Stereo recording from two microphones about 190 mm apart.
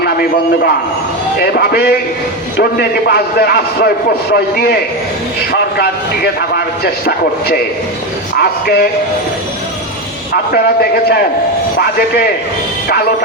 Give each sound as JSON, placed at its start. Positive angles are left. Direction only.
{"t": 1.4, "sound": "a man's voice", "side_deg": 55}
{"t": 8.4, "sound": "a man's voice", "side_deg": 55}
{"t": 10.5, "sound": "a man's voice", "side_deg": 55}